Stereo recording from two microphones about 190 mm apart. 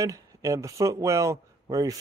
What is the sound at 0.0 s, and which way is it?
Speech, 15° right (ahead or behind).